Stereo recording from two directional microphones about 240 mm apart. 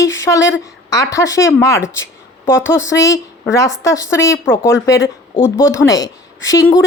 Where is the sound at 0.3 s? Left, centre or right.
Left.